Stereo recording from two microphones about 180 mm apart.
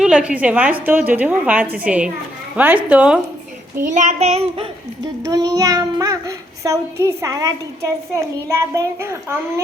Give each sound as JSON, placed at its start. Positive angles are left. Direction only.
{"t": 0.0, "sound": "a woman's voice", "side_deg": -5}
{"t": 3.9, "sound": "child singing", "side_deg": -40}
{"t": 5.2, "sound": "a child's voice", "side_deg": -20}